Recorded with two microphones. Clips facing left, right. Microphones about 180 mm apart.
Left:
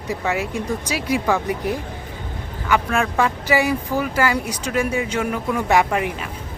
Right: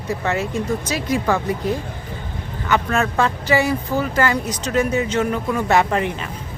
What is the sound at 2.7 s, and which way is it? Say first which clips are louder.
A woman's voice: even; 10° left (ahead or behind).